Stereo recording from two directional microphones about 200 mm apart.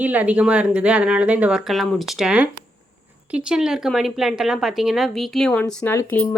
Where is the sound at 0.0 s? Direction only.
5° right (ahead or behind).